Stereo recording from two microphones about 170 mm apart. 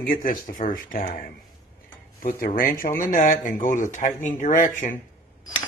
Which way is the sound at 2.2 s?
55° left (ahead or behind).